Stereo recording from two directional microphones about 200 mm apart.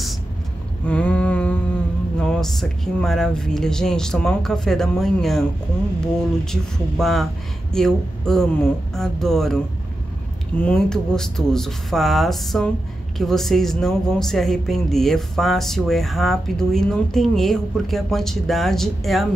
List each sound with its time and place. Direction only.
0.8 s boat: 5° left (ahead or behind)
2.1 s speech: 5° left (ahead or behind)
10.6 s speech: 5° left (ahead or behind)